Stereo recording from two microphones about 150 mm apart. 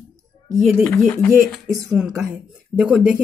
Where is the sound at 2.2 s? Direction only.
5° right (ahead or behind).